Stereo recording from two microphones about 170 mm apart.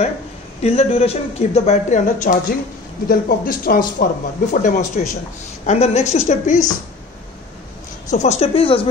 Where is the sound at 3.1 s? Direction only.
60° left (ahead or behind).